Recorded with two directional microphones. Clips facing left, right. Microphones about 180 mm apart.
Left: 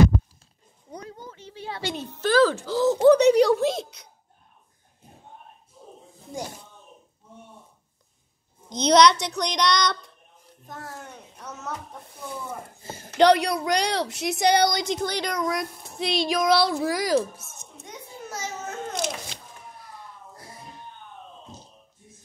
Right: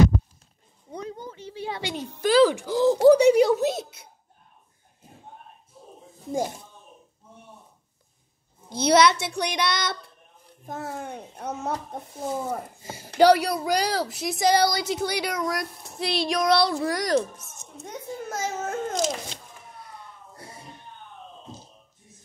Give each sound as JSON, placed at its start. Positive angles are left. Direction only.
{"t": 0.9, "sound": "speech", "side_deg": -20}
{"t": 8.6, "sound": "child singing", "side_deg": -5}
{"t": 10.9, "sound": "speech", "side_deg": -60}
{"t": 12.8, "sound": "child singing", "side_deg": -10}
{"t": 13.2, "sound": "a woman's voice", "side_deg": -5}
{"t": 17.8, "sound": "a sound", "side_deg": -50}